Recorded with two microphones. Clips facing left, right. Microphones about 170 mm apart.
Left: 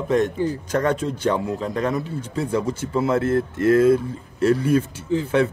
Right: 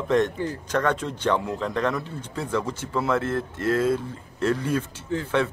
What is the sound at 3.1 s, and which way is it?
Speech, 40° left (ahead or behind).